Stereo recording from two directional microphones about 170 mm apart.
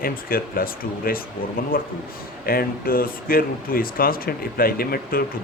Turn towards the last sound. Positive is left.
turn(degrees=60)  # may be behind; listen again after turning